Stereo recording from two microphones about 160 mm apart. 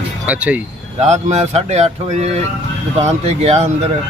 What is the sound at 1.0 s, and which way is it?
Speech, 45° right (ahead or behind).